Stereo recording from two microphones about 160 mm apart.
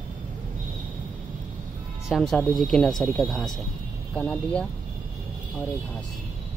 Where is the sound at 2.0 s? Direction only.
Centre (ahead or behind).